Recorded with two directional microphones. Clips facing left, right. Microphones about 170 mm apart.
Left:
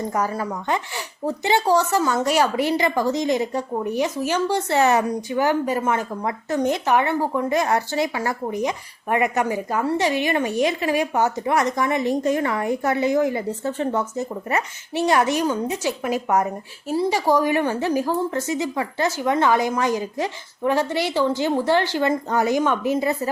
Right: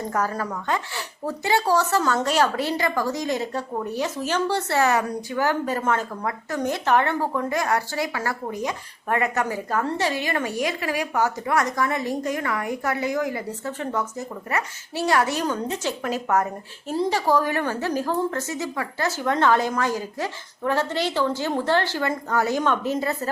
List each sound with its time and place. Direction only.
0.1 s a woman's voice: 15° left (ahead or behind)